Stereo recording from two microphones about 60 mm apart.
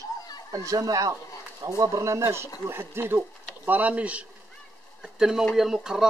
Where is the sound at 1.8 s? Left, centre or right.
Right.